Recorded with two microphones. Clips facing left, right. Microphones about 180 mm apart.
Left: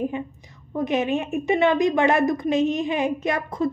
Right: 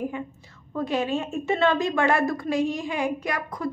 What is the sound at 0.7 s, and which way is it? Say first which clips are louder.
A woman's voice: left 3 dB; 20° left (ahead or behind).